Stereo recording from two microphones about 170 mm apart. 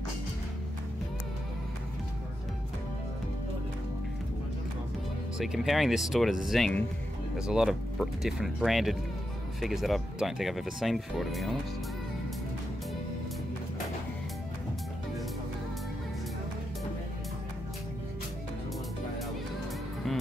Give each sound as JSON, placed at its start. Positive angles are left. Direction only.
{"t": 5.4, "sound": "speech", "side_deg": 0}